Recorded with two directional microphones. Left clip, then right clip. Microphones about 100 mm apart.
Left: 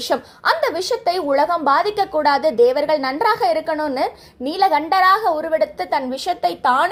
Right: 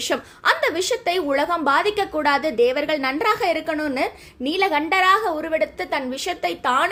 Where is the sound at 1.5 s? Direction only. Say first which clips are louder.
Left 2 dB; 50° right (ahead or behind).